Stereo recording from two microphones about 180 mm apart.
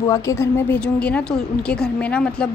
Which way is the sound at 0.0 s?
15° left (ahead or behind).